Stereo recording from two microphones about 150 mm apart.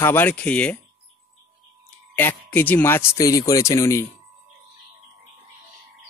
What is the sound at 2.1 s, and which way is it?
Speech, 15° left (ahead or behind).